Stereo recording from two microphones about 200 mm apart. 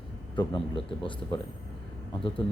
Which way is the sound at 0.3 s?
25° left (ahead or behind).